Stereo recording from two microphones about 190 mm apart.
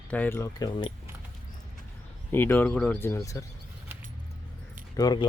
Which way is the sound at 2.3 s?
10° left (ahead or behind).